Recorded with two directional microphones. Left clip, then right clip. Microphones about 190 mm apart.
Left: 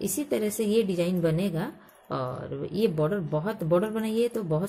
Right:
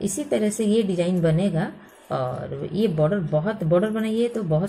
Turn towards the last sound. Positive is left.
turn(degrees=40)  # may be behind; listen again after turning